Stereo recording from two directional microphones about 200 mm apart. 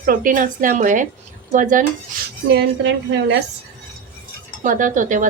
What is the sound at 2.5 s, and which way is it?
Speech, 60° right (ahead or behind).